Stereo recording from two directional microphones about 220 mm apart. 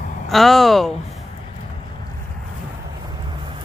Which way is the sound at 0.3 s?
Centre (ahead or behind).